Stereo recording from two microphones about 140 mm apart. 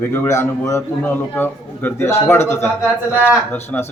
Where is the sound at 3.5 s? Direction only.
15° left (ahead or behind).